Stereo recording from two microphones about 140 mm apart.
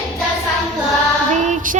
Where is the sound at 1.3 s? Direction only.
60° right (ahead or behind).